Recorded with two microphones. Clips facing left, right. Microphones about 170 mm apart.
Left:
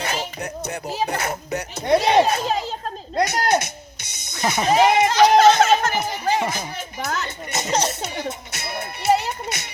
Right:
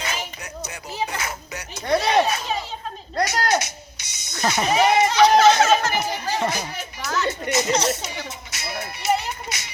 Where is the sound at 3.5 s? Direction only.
55° left (ahead or behind).